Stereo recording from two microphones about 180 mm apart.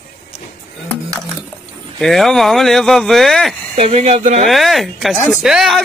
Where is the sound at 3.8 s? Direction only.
35° right (ahead or behind).